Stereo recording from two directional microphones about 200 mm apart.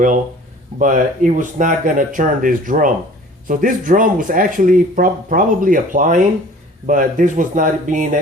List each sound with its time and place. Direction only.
0.8 s speech: 40° right (ahead or behind)